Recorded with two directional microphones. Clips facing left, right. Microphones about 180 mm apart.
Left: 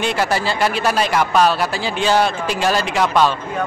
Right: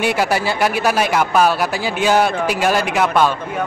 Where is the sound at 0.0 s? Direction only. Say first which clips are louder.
Right 2 dB; 10° right (ahead or behind).